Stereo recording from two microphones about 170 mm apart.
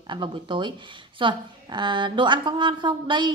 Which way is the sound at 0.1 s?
30° right (ahead or behind).